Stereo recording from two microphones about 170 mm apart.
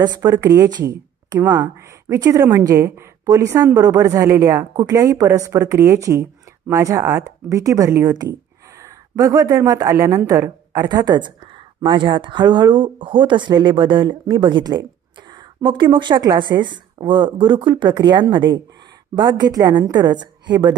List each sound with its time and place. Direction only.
0.0 s a woman's voice: 25° right (ahead or behind)